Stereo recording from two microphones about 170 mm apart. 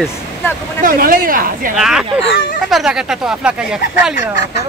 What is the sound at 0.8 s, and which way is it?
Speech, 55° right (ahead or behind).